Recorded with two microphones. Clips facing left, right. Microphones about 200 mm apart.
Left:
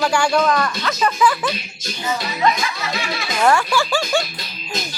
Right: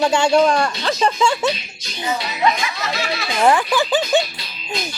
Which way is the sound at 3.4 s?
15° right (ahead or behind).